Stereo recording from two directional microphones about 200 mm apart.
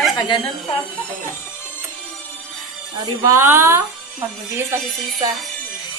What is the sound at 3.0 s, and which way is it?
A woman's voice, 15° right (ahead or behind).